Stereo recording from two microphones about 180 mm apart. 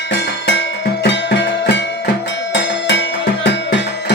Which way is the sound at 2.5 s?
85° left.